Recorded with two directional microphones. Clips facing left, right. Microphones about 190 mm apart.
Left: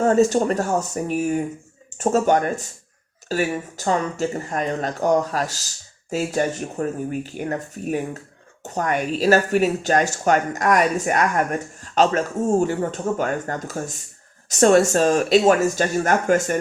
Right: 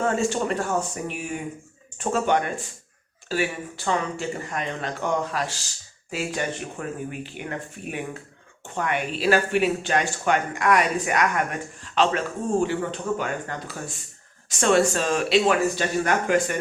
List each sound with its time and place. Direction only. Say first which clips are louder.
0.0 s a woman's voice: left 7 dB; 40° left (ahead or behind)